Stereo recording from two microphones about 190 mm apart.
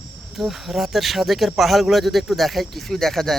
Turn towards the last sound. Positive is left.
turn(degrees=0)  # may be behind; listen again after turning